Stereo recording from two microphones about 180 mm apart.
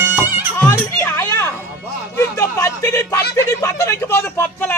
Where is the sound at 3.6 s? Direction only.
15° left (ahead or behind).